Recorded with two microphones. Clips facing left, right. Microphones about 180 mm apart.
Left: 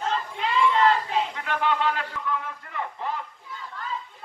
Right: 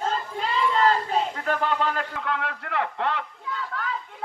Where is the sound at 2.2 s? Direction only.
75° right (ahead or behind).